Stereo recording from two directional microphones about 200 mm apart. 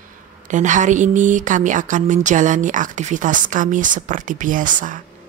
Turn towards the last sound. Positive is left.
turn(degrees=-40)  # may be behind; listen again after turning